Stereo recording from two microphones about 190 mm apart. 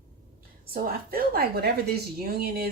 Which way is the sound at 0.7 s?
50° right (ahead or behind).